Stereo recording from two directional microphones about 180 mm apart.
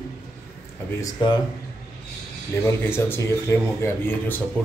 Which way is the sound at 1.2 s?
25° left (ahead or behind).